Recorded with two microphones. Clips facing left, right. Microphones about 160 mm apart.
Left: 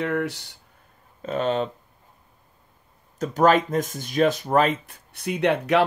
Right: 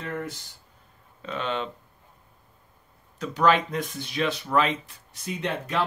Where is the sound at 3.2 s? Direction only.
45° left (ahead or behind).